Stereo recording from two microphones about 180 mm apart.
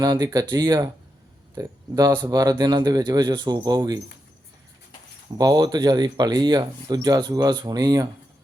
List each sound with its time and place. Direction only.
0.0 s speech: 20° right (ahead or behind)
5.4 s speech: 20° right (ahead or behind)